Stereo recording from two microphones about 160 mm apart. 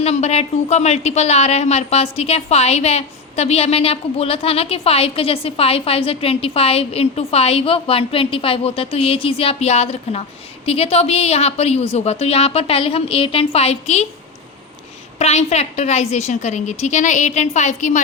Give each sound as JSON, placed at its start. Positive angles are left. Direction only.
{"t": 0.0, "sound": "a woman's voice", "side_deg": 40}
{"t": 15.2, "sound": "a woman's voice", "side_deg": 40}